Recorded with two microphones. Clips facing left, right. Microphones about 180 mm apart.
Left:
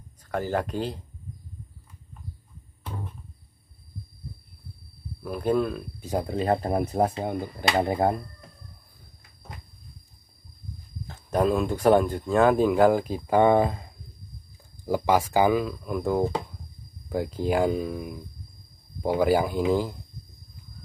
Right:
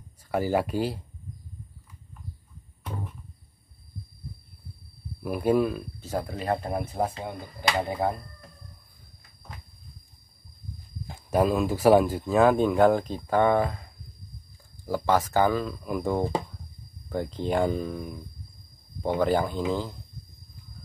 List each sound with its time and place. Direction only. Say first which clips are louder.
0.3 s speech: right 2 dB; 10° right (ahead or behind)
5.2 s speech: right 1 dB; 10° right (ahead or behind)
5.9 s speech: left 2 dB; 15° left (ahead or behind)
6.3 s speech: left 6 dB; 30° left (ahead or behind)
11.1 s speech: even; 10° right (ahead or behind); by 13.8 s 20° left (ahead or behind)
14.9 s speech: left 2 dB; 10° left (ahead or behind)